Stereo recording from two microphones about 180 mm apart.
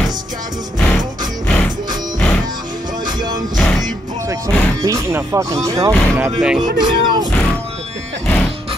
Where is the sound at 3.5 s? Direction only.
Centre (ahead or behind).